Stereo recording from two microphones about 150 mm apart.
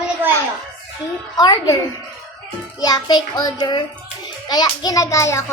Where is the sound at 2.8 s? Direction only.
25° left (ahead or behind).